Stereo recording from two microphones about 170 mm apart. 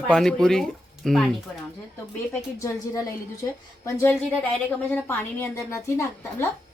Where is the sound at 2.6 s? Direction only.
20° left (ahead or behind).